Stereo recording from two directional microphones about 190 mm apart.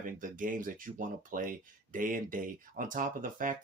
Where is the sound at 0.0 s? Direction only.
45° right (ahead or behind).